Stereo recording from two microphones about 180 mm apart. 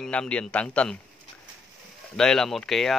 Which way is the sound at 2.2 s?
5° left (ahead or behind).